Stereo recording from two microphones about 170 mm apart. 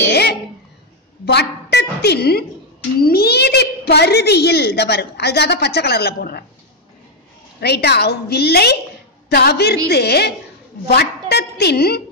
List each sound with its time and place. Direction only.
0.1 s a sound: 75° left (ahead or behind)
1.2 s a woman's voice: 75° left (ahead or behind)
7.6 s a child's voice: 75° left (ahead or behind)